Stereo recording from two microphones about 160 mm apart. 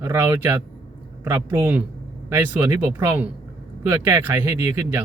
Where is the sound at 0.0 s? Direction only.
15° right (ahead or behind).